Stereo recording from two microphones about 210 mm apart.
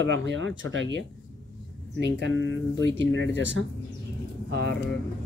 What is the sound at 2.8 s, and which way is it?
Speech, 60° right (ahead or behind).